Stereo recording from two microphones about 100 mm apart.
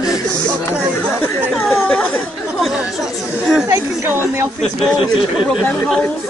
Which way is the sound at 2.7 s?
5° right (ahead or behind).